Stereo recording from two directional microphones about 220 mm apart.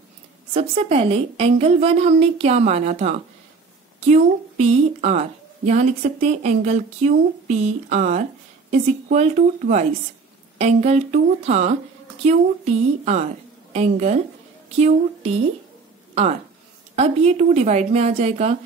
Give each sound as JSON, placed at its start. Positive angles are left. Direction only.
{"t": 0.5, "sound": "a woman's voice", "side_deg": -25}
{"t": 16.9, "sound": "a woman's voice", "side_deg": -30}